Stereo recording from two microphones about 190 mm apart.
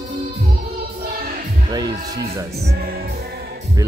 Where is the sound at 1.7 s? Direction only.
20° right (ahead or behind).